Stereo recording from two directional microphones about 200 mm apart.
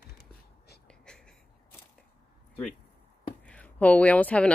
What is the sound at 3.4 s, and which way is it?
Speech, 5° left (ahead or behind).